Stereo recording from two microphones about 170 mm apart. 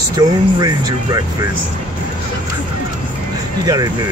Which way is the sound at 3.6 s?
20° right (ahead or behind).